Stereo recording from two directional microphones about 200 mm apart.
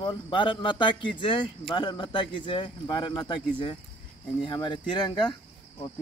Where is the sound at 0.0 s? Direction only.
25° left (ahead or behind).